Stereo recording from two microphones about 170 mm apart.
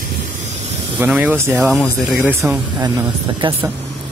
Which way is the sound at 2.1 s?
10° right (ahead or behind).